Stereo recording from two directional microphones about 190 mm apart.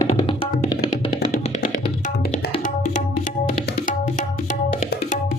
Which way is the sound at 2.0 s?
40° left (ahead or behind).